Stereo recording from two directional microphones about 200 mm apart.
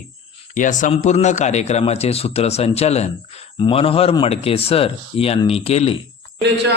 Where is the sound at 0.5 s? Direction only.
40° left (ahead or behind).